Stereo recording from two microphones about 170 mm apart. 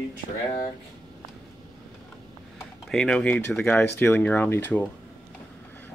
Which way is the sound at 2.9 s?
5° left (ahead or behind).